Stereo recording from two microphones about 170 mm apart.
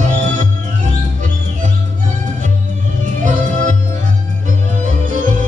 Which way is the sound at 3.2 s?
50° right (ahead or behind).